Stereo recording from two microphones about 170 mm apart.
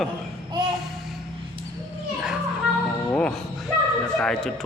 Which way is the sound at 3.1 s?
10° left (ahead or behind).